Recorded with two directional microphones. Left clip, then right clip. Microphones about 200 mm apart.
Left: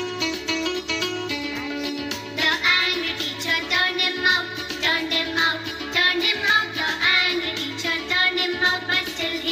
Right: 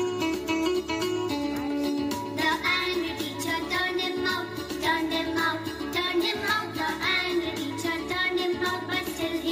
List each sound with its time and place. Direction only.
0.2 s music: 50° right (ahead or behind)
2.4 s music: 50° right (ahead or behind)